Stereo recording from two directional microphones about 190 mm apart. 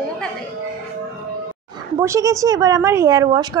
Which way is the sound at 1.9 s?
15° right (ahead or behind).